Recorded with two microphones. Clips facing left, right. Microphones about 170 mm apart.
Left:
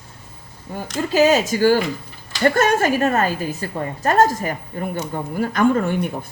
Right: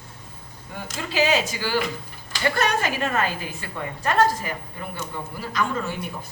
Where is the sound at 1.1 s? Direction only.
45° left (ahead or behind).